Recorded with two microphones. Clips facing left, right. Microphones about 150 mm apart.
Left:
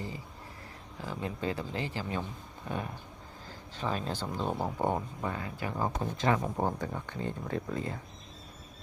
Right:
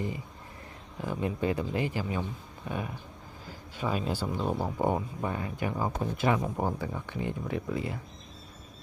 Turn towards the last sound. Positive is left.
turn(degrees=-15)  # may be behind; listen again after turning